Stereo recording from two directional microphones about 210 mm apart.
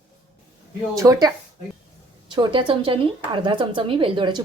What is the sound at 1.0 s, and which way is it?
Speech, 10° right (ahead or behind).